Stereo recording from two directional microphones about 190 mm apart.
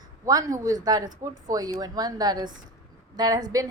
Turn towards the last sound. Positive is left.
turn(degrees=-20)  # may be behind; listen again after turning